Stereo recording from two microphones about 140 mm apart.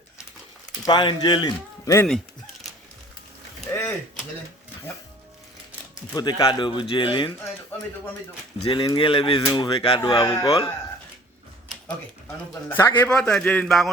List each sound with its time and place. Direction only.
0.9 s speech: 35° left (ahead or behind)
6.1 s speech: 30° left (ahead or behind)
8.6 s speech: 40° left (ahead or behind); by 10.7 s 25° left (ahead or behind)
12.6 s a man's voice: 15° left (ahead or behind)
13.7 s speech: centre (ahead or behind)